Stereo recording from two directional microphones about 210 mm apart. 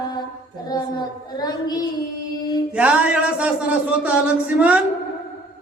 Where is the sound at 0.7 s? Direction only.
20° left (ahead or behind).